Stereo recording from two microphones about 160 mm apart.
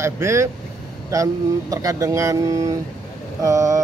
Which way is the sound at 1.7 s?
20° right (ahead or behind).